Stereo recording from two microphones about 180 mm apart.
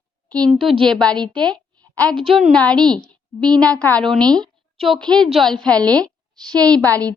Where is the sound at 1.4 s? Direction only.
5° left (ahead or behind).